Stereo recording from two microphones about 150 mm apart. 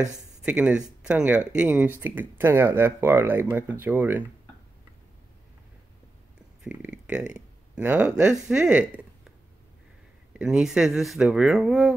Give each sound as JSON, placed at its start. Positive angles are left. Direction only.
{"t": 0.4, "sound": "speech", "side_deg": -10}
{"t": 6.6, "sound": "speech", "side_deg": -5}
{"t": 10.3, "sound": "speech", "side_deg": -5}